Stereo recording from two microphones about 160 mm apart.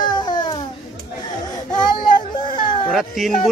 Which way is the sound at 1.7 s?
30° left (ahead or behind).